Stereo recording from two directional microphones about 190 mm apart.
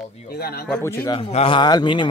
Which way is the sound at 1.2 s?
30° left (ahead or behind).